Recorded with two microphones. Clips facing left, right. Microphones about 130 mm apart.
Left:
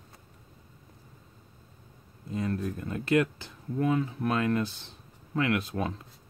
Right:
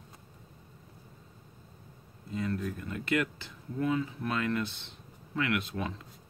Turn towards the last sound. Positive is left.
turn(degrees=40)  # may be behind; listen again after turning